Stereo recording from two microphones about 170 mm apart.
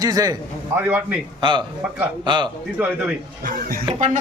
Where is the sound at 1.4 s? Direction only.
30° right (ahead or behind).